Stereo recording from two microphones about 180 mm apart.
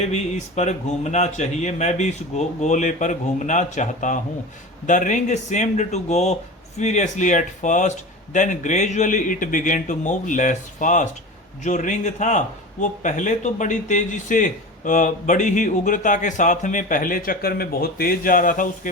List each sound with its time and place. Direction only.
0.1 s speech: 40° left (ahead or behind)